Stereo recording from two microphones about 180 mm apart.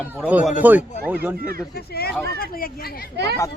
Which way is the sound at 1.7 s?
60° left (ahead or behind).